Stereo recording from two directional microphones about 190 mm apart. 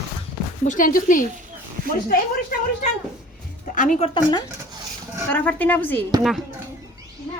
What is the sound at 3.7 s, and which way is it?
Speech, 40° left (ahead or behind).